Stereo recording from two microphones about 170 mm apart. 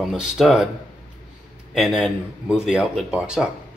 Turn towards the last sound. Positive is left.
turn(degrees=-5)  # may be behind; listen again after turning